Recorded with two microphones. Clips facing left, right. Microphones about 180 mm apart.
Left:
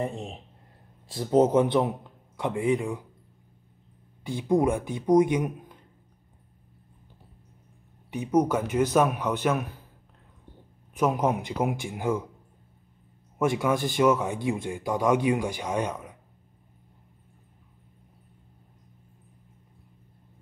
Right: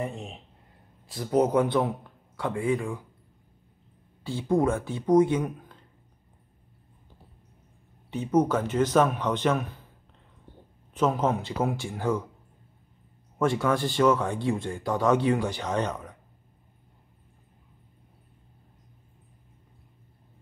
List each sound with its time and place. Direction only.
1.1 s a man's voice: 30° left (ahead or behind)
4.2 s speech: 15° left (ahead or behind)
8.1 s speech: 10° left (ahead or behind)
10.9 s speech: 10° left (ahead or behind)
13.4 s speech: 10° left (ahead or behind)